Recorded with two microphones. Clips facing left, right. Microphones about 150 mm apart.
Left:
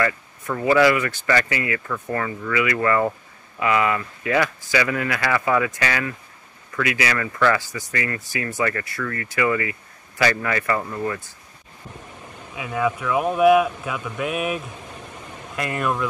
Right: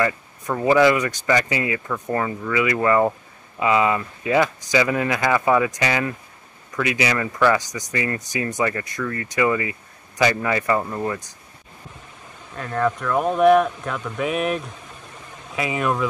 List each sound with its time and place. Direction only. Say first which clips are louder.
0.0 s speech: right 1 dB; 20° right (ahead or behind)
12.5 s speech: right 1 dB; 5° left (ahead or behind)